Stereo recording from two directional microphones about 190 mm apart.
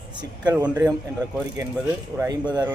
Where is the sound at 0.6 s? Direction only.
5° right (ahead or behind).